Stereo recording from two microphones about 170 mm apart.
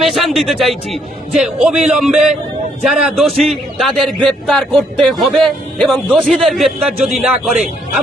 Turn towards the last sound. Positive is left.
turn(degrees=0)  # may be behind; listen again after turning